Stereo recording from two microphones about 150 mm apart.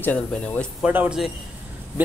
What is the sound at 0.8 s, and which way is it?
Speech, 10° right (ahead or behind).